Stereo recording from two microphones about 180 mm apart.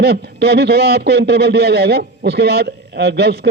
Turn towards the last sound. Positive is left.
turn(degrees=-65)  # may be behind; listen again after turning